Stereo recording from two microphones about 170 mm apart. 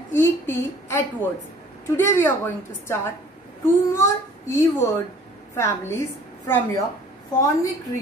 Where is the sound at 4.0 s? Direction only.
20° left (ahead or behind).